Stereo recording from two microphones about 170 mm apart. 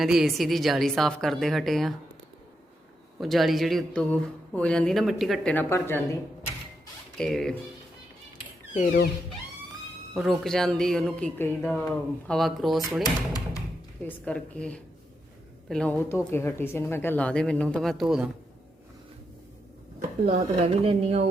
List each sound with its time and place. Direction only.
0.0 s speech: centre (ahead or behind)
3.2 s speech: centre (ahead or behind)
7.2 s speech: centre (ahead or behind)
8.7 s speech: 45° left (ahead or behind)
10.2 s speech: centre (ahead or behind)
13.0 s speech: 20° left (ahead or behind)
14.0 s speech: 10° left (ahead or behind)
20.8 s speech: 35° right (ahead or behind)